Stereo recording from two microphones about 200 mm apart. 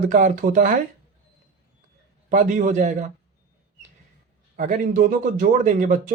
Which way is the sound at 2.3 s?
40° right (ahead or behind).